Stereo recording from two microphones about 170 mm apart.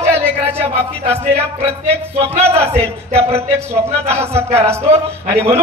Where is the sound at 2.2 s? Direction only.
35° right (ahead or behind).